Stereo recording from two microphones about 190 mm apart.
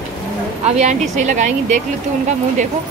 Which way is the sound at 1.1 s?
40° right (ahead or behind).